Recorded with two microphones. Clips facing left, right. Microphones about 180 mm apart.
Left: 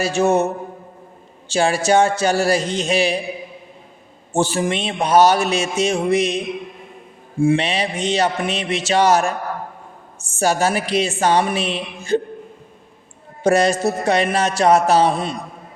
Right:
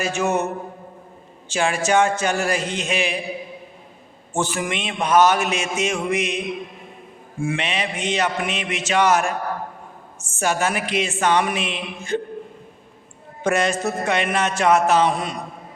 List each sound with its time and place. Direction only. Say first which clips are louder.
0.0 s a man's voice: left 5 dB; 35° left (ahead or behind)
1.5 s a man's voice: left 4 dB; 35° left (ahead or behind)
4.4 s a man's voice: left 5 dB; 30° left (ahead or behind)
7.4 s a man's voice: left 7 dB; 35° left (ahead or behind)
13.4 s a man's voice: left 5 dB; 35° left (ahead or behind)